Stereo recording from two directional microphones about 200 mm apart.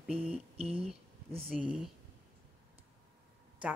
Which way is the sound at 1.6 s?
5° right (ahead or behind).